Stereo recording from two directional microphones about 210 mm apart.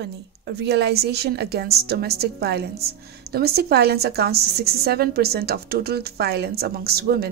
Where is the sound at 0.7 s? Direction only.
50° right (ahead or behind).